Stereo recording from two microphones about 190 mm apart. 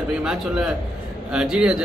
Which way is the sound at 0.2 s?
5° right (ahead or behind).